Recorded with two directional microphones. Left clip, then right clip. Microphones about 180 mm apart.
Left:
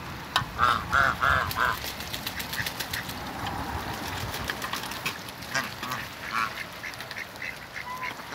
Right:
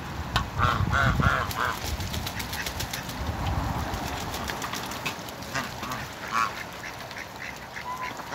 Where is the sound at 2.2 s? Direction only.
55° right (ahead or behind).